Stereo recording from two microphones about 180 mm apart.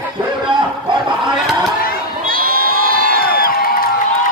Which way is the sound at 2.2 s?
55° right (ahead or behind).